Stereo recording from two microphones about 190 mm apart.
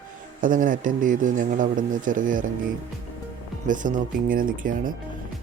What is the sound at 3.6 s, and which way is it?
Speech, 45° right (ahead or behind).